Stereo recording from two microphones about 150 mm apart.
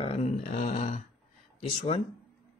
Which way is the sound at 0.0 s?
40° left (ahead or behind).